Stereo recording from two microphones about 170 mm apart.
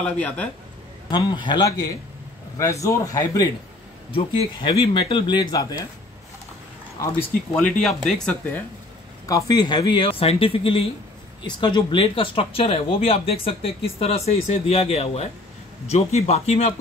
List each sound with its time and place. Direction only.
0.0 s speech: 10° left (ahead or behind)
1.1 s speech: 25° left (ahead or behind)
7.7 s speech: centre (ahead or behind)
9.2 s speech: 20° left (ahead or behind); by 16.7 s 40° left (ahead or behind)